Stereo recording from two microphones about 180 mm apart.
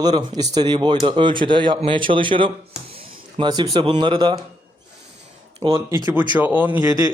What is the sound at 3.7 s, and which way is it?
Speech, 25° right (ahead or behind).